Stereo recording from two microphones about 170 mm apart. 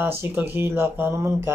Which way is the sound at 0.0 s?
10° right (ahead or behind).